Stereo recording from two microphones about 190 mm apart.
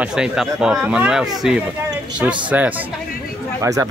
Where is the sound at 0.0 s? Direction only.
5° right (ahead or behind).